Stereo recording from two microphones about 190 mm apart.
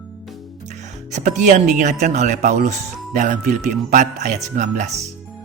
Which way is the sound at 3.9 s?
40° right (ahead or behind).